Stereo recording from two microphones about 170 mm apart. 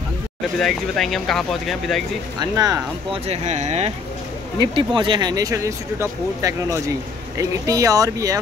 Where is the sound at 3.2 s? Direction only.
40° right (ahead or behind).